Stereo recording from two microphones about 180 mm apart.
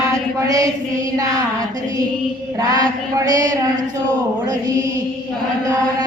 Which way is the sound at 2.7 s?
20° right (ahead or behind).